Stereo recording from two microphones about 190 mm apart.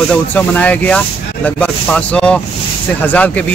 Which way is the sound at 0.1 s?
10° left (ahead or behind).